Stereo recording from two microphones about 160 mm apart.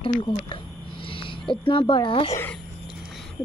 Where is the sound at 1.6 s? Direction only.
30° left (ahead or behind).